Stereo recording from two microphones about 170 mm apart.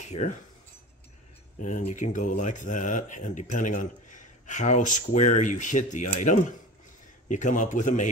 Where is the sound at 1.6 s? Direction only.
50° left (ahead or behind).